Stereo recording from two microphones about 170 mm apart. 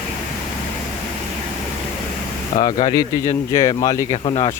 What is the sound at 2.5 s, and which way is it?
Speech, 35° left (ahead or behind).